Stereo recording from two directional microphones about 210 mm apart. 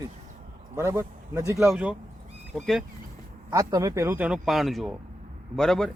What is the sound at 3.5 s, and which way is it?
Speech, 15° right (ahead or behind).